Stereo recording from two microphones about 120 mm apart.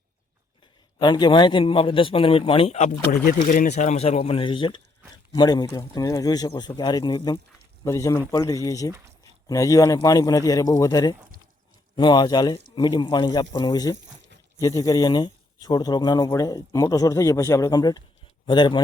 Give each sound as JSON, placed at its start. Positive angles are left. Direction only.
{"t": 0.9, "sound": "a man's voice", "side_deg": 35}
{"t": 2.7, "sound": "speech", "side_deg": 75}